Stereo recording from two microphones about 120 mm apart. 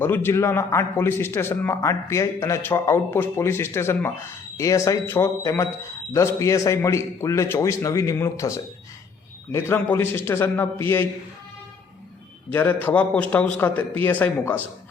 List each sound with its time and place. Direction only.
0.0 s speech: 20° left (ahead or behind)
12.5 s a man's voice: 15° left (ahead or behind)